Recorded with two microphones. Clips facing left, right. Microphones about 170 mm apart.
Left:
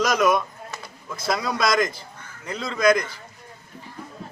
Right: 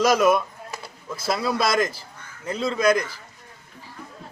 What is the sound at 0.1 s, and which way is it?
Speech, 5° right (ahead or behind).